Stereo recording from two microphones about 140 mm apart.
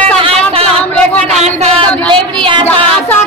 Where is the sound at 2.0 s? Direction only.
35° right (ahead or behind).